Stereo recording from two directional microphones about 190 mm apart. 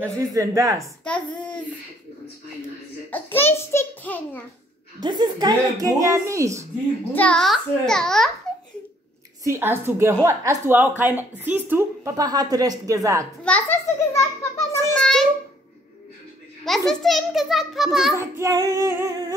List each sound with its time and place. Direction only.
0.0 s speech: 15° right (ahead or behind)
1.0 s a child's voice: 5° left (ahead or behind)
3.1 s a child's voice: 10° left (ahead or behind)
5.0 s speech: 20° right (ahead or behind)
7.2 s a child's voice: 5° left (ahead or behind)
9.4 s speech: 15° right (ahead or behind)
13.4 s a sound: 5° left (ahead or behind)
15.0 s a sound: centre (ahead or behind)
16.6 s a child's voice: centre (ahead or behind)
18.1 s speech: 15° right (ahead or behind)